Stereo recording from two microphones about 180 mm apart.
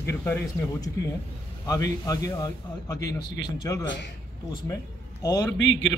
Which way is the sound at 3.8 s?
90° left.